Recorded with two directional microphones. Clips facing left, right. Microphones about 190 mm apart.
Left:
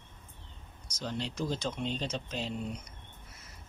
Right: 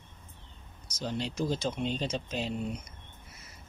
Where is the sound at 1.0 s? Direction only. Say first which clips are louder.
Right 3 dB; 10° right (ahead or behind).